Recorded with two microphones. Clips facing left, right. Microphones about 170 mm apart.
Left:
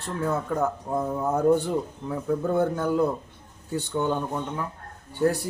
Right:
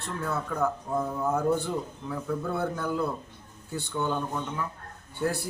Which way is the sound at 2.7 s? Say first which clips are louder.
Left 5 dB; 35° left (ahead or behind).